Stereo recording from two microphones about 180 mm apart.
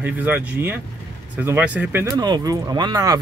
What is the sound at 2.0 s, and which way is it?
Speech, 25° right (ahead or behind).